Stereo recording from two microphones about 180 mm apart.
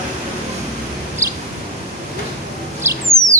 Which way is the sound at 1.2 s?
15° right (ahead or behind).